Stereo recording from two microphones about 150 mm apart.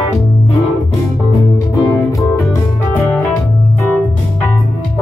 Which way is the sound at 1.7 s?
20° left (ahead or behind).